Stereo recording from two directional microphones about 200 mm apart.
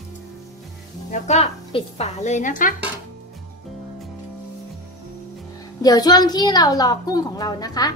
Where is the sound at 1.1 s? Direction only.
35° left (ahead or behind).